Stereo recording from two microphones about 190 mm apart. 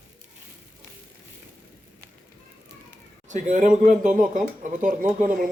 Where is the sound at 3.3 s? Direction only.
40° right (ahead or behind).